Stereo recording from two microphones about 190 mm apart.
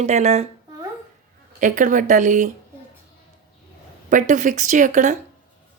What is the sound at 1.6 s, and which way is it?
Speech, 45° right (ahead or behind).